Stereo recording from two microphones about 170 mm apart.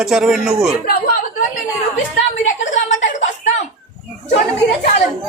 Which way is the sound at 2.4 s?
45° left (ahead or behind).